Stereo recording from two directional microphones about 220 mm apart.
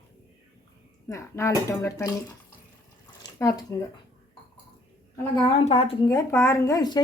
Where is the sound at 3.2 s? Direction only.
15° left (ahead or behind).